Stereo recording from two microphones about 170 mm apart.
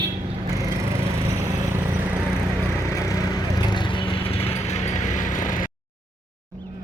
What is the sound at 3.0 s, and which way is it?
Vehicle, 25° left (ahead or behind).